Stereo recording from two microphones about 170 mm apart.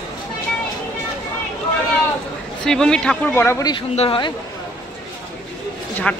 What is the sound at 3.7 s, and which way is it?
Speech, 30° left (ahead or behind).